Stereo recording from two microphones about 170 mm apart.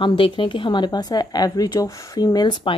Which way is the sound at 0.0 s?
30° left (ahead or behind).